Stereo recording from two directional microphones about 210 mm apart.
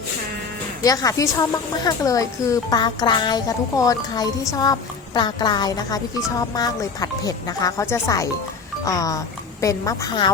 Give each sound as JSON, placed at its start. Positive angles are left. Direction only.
{"t": 0.8, "sound": "a woman's voice", "side_deg": 15}